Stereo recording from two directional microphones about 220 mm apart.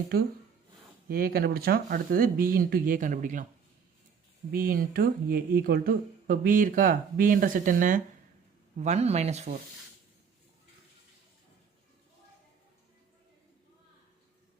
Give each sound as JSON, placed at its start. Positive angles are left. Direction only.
{"t": 1.0, "sound": "speech", "side_deg": -40}
{"t": 4.5, "sound": "speech", "side_deg": -40}